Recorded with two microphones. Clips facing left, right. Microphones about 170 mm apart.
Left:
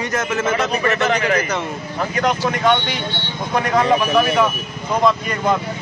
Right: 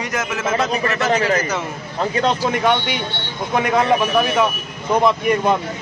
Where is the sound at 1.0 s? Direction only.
35° right (ahead or behind).